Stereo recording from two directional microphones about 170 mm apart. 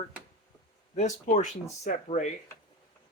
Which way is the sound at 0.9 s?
45° left (ahead or behind).